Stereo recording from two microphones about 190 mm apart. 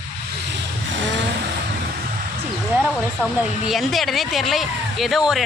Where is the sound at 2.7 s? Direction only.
10° right (ahead or behind).